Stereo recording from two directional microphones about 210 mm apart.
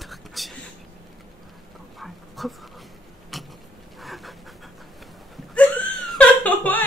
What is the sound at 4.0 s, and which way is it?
Pant, centre (ahead or behind).